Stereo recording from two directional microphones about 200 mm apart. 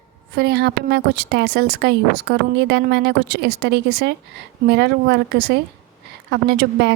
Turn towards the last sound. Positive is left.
turn(degrees=-55)  # may be behind; listen again after turning